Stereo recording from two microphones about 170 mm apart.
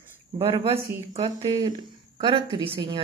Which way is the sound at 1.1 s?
25° right (ahead or behind).